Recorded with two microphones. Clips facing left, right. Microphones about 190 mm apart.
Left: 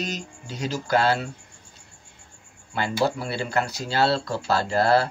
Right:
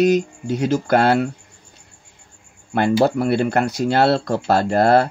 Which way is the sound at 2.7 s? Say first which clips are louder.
Right 8 dB; 60° right (ahead or behind).